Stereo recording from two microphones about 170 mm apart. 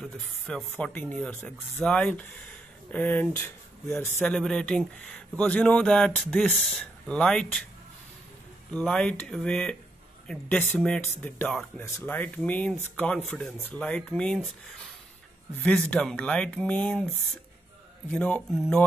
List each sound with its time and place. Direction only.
0.0 s speech: 5° left (ahead or behind)
8.7 s speech: 5° left (ahead or behind)
15.6 s speech: 5° left (ahead or behind)
18.1 s speech: 5° left (ahead or behind)